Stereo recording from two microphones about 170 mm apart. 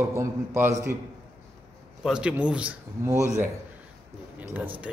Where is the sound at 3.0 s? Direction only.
20° right (ahead or behind).